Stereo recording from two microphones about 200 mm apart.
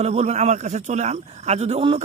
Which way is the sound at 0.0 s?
30° right (ahead or behind).